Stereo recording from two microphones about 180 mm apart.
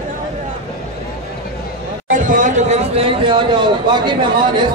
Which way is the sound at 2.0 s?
45° right (ahead or behind).